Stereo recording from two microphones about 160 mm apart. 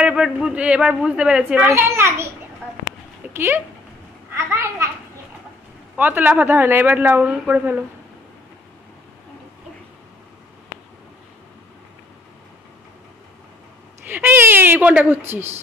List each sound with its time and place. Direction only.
0.0 s a man's voice: 5° right (ahead or behind)
1.7 s a man's voice: 15° right (ahead or behind)
3.3 s a man's voice: 15° right (ahead or behind)
4.3 s a sound: 15° right (ahead or behind)
5.9 s a man's voice: 10° right (ahead or behind)
14.0 s a man's voice: 10° right (ahead or behind)